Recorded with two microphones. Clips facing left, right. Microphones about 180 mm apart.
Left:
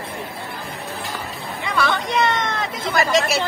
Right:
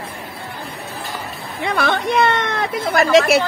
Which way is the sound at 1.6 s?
55° right (ahead or behind).